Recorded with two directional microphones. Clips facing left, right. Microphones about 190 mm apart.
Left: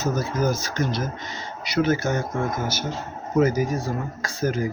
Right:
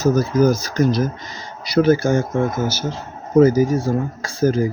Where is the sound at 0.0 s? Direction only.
40° right (ahead or behind).